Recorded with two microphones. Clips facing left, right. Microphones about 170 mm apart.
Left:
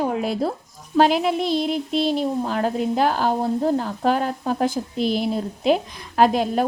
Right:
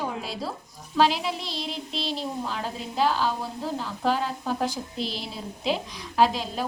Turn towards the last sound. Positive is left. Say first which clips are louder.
# left 5 dB
turn(degrees=55)  # may be behind; listen again after turning